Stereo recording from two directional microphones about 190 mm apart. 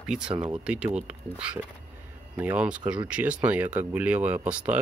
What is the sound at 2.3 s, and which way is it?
Speech, 5° right (ahead or behind).